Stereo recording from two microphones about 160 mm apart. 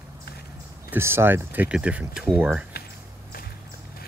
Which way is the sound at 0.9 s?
15° right (ahead or behind).